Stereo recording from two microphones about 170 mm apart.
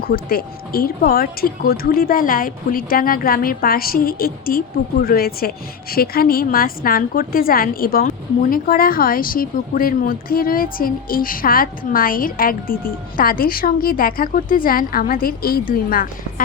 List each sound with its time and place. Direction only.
0.1 s a woman's voice: 60° left (ahead or behind)